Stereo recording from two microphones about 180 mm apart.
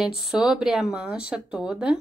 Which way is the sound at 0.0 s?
5° right (ahead or behind).